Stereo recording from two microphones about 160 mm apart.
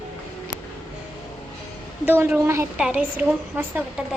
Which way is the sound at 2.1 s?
10° right (ahead or behind).